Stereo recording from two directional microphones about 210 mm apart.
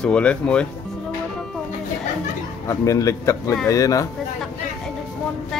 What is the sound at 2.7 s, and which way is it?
Speech, 15° left (ahead or behind).